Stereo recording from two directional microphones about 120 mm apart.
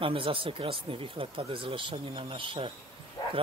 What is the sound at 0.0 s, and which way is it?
A man's voice, 45° right (ahead or behind).